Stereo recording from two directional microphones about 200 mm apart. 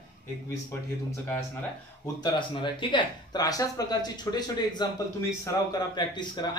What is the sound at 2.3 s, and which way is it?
Speech, 25° left (ahead or behind).